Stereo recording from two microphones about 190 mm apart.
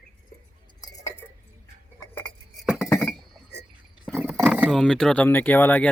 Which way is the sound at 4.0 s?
10° right (ahead or behind).